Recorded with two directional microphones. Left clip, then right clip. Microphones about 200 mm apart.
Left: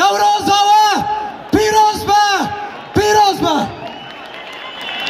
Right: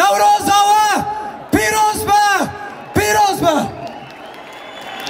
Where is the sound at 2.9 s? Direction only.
30° right (ahead or behind).